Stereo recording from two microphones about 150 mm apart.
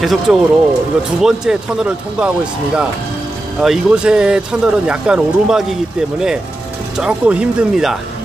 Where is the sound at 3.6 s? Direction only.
5° right (ahead or behind).